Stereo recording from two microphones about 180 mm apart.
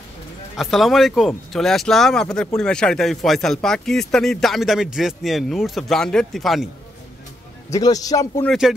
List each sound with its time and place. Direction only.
0.6 s speech: centre (ahead or behind)
7.7 s speech: 20° left (ahead or behind)
8.5 s speech: centre (ahead or behind)